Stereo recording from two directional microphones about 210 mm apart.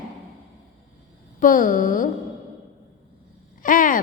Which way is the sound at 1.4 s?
40° left (ahead or behind).